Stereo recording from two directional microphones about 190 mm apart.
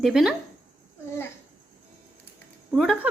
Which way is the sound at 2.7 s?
Centre (ahead or behind).